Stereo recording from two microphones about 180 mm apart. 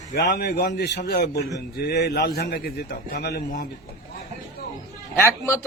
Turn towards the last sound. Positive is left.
turn(degrees=15)  # may be behind; listen again after turning